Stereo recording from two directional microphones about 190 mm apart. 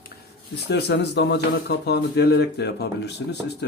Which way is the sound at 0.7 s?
60° left (ahead or behind).